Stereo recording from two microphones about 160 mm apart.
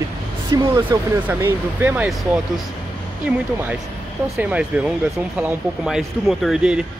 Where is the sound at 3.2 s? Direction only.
10° right (ahead or behind).